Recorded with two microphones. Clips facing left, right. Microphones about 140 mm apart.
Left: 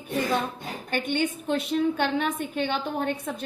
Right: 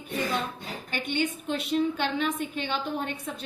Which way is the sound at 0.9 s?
50° left (ahead or behind).